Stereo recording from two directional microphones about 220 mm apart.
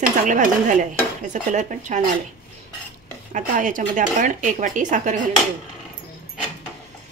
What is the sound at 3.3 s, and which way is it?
Dishes, 35° right (ahead or behind).